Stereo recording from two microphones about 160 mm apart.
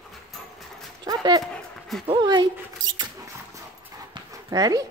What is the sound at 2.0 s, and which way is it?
Speech, 30° right (ahead or behind).